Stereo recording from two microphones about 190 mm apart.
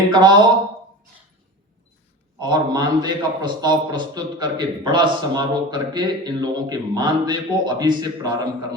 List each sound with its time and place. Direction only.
0.1 s a man's voice: 20° right (ahead or behind)
2.4 s a man's voice: 20° right (ahead or behind)